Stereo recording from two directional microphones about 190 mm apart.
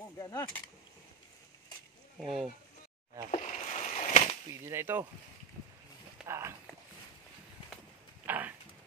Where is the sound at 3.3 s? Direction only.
40° left (ahead or behind).